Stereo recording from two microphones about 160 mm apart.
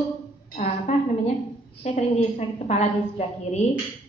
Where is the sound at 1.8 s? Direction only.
45° left (ahead or behind).